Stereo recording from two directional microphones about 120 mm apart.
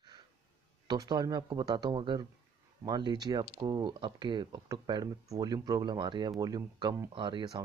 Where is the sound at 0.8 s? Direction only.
35° right (ahead or behind).